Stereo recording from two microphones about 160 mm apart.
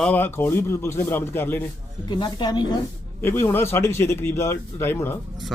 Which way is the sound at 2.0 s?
25° left (ahead or behind).